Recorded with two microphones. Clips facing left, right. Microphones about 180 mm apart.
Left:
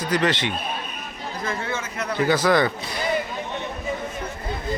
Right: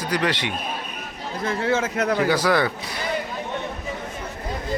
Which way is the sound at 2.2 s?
10° right (ahead or behind).